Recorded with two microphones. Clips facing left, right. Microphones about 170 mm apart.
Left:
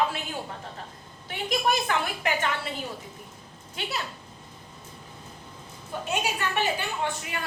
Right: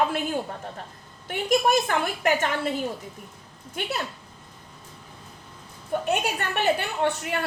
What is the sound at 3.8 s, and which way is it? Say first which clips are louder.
Speech: right 4 dB; 50° right (ahead or behind).